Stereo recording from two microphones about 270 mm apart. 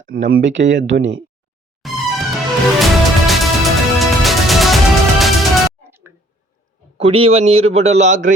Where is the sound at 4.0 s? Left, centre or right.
Centre.